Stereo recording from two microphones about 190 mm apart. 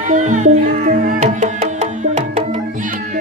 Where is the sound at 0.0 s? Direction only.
40° right (ahead or behind).